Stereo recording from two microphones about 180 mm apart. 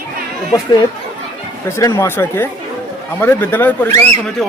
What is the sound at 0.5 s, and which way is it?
A man's voice, 20° left (ahead or behind).